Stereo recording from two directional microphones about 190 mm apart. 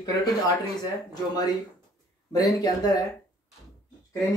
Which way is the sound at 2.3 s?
20° left (ahead or behind).